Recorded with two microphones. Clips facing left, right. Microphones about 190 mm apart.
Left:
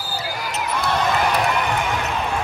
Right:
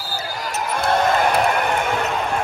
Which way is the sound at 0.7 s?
55° right (ahead or behind).